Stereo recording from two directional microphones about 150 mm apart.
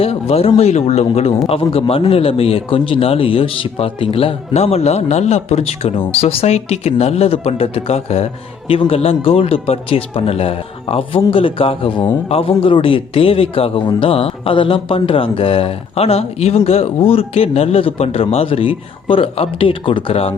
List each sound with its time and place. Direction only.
0.0 s a man's voice: 40° left (ahead or behind)